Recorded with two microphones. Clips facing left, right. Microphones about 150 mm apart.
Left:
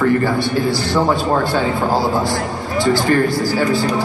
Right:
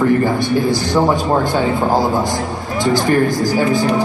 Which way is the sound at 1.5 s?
20° right (ahead or behind).